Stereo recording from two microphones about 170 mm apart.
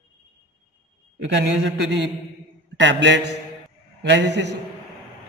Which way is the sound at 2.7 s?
90° right.